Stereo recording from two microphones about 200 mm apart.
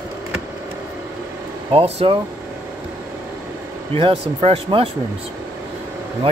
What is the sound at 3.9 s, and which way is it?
Speech, 30° right (ahead or behind).